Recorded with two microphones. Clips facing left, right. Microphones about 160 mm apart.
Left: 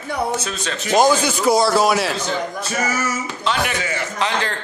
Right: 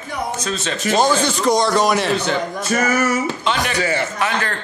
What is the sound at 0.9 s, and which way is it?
A man's voice, 10° left (ahead or behind).